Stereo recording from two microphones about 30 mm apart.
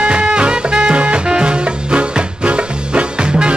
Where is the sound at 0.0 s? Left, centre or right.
Right.